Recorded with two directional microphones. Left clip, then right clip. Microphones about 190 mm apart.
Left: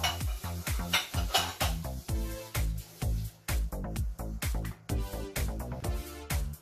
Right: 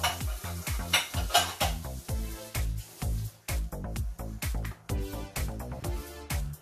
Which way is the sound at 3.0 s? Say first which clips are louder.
Even; centre (ahead or behind).